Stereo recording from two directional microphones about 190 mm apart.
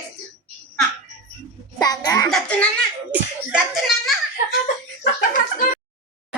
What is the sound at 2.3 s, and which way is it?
A child's voice, 5° left (ahead or behind).